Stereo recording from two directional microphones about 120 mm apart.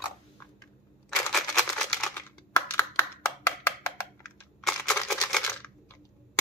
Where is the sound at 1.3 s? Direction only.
5° left (ahead or behind).